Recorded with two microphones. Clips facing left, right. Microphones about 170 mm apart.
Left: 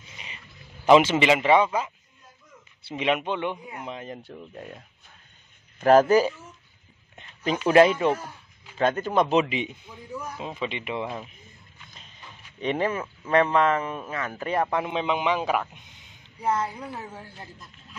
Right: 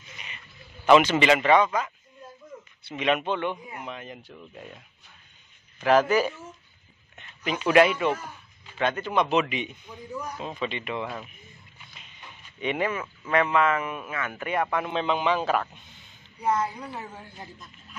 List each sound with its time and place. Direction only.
0.8 s a man's voice: 25° left (ahead or behind)
2.8 s a man's voice: 25° left (ahead or behind)
3.8 s a man's voice: 30° left (ahead or behind)
5.8 s a man's voice: 40° left (ahead or behind)
7.6 s a man's voice: 30° left (ahead or behind)
9.4 s a man's voice: 25° left (ahead or behind)
10.1 s a man's voice: 5° left (ahead or behind)
10.6 s a man's voice: 20° left (ahead or behind)
11.9 s a sound: 35° left (ahead or behind)
13.3 s a man's voice: 35° left (ahead or behind)
14.9 s a man's voice: 15° left (ahead or behind)
16.3 s speech: 5° left (ahead or behind)